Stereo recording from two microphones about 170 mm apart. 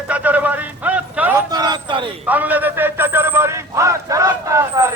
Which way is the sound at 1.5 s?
25° right (ahead or behind).